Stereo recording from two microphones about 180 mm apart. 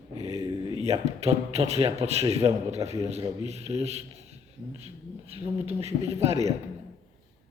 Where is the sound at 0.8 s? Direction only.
35° right (ahead or behind).